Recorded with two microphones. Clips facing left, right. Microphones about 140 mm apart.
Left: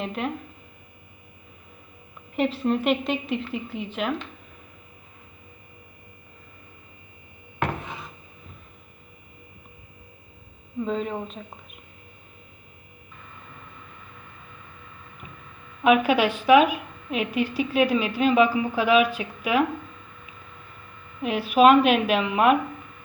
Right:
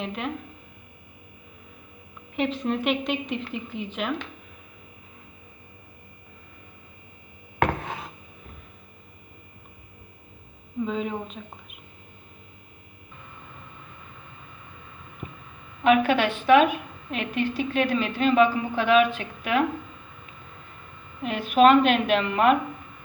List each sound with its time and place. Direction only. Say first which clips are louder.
0.0 s a woman's voice: left 2 dB; centre (ahead or behind)
2.3 s a woman's voice: left 3 dB; centre (ahead or behind)
7.6 s a sound: right 4 dB; 70° right (ahead or behind)
10.8 s a woman's voice: left 2 dB; centre (ahead or behind)
15.8 s a woman's voice: left 1 dB; 5° left (ahead or behind)
21.2 s a woman's voice: left 1 dB; 5° left (ahead or behind)